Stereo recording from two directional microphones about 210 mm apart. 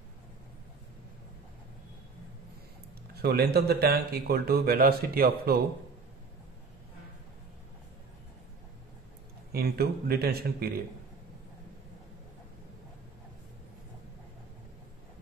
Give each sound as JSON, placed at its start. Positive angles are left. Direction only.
{"t": 3.2, "sound": "speech", "side_deg": -50}
{"t": 9.5, "sound": "speech", "side_deg": -45}